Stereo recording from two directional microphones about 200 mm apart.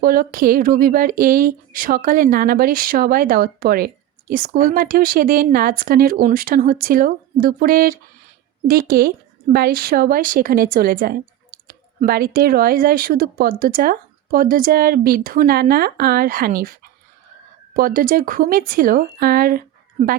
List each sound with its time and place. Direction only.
0.0 s a woman's voice: 45° right (ahead or behind)
17.7 s a woman's voice: 45° right (ahead or behind)